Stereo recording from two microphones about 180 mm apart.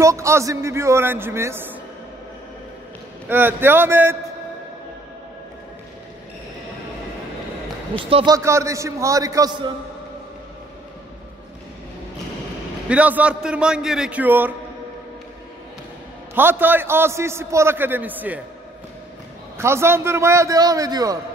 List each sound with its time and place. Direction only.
0.0 s a man's voice: 15° right (ahead or behind)
3.3 s a man's voice: 10° right (ahead or behind)
8.0 s a man's voice: 30° right (ahead or behind)
8.4 s a man's voice: 15° right (ahead or behind)
12.8 s a man's voice: 5° right (ahead or behind)
16.3 s a man's voice: 10° right (ahead or behind)
19.6 s a man's voice: 15° right (ahead or behind)